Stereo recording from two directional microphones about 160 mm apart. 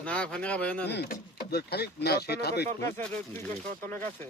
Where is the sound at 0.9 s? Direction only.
85° left.